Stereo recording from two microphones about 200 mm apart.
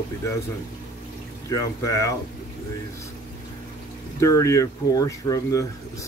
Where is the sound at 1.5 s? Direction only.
15° left (ahead or behind).